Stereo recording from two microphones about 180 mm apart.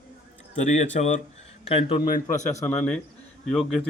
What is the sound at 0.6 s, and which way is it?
Speech, 40° left (ahead or behind).